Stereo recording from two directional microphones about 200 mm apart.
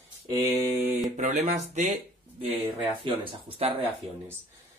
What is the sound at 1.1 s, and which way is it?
Speech, 35° right (ahead or behind).